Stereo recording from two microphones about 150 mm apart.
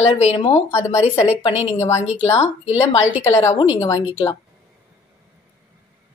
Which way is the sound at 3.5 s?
30° left (ahead or behind).